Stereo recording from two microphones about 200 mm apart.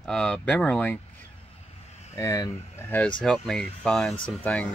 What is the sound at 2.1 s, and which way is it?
Speech, 15° left (ahead or behind).